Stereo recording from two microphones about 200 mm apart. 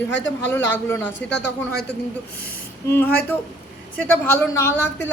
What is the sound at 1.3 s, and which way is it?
Speech, 60° left (ahead or behind).